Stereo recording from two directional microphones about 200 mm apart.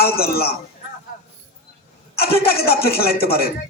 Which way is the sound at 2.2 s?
50° left (ahead or behind).